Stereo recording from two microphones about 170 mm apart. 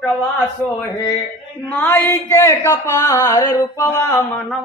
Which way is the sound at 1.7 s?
10° left (ahead or behind).